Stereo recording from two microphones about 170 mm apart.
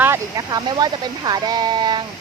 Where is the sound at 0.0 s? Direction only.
20° right (ahead or behind).